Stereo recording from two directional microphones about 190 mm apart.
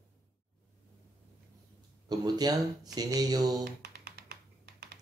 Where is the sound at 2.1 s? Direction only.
20° right (ahead or behind).